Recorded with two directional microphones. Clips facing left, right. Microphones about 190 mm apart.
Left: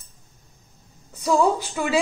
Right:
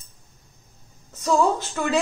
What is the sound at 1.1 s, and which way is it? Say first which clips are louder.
Speech: left 1 dB; 10° left (ahead or behind).